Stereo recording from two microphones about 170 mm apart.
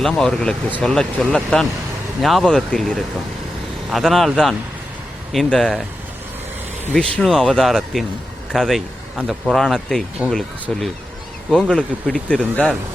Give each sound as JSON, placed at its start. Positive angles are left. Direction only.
{"t": 0.0, "sound": "speech", "side_deg": 5}
{"t": 6.9, "sound": "speech", "side_deg": 5}